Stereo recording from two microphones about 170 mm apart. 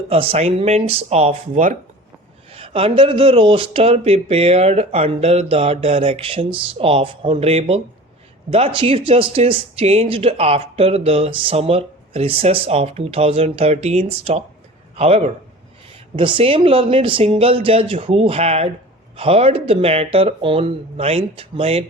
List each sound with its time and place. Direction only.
0.1 s speech: 35° right (ahead or behind)
2.5 s speech: 35° right (ahead or behind)